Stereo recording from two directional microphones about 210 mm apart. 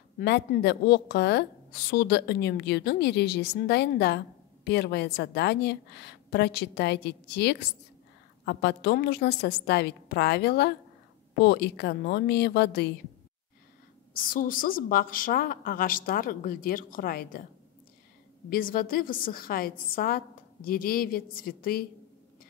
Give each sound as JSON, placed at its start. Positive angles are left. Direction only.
{"t": 0.2, "sound": "a woman's voice", "side_deg": 50}
{"t": 14.1, "sound": "a woman's voice", "side_deg": 40}
{"t": 18.5, "sound": "a woman's voice", "side_deg": 45}